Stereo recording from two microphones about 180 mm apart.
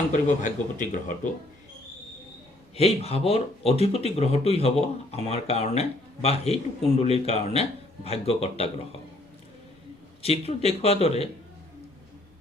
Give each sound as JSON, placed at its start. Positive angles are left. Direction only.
{"t": 0.1, "sound": "speech", "side_deg": 45}
{"t": 2.7, "sound": "a man's voice", "side_deg": 35}
{"t": 10.2, "sound": "a man's voice", "side_deg": 35}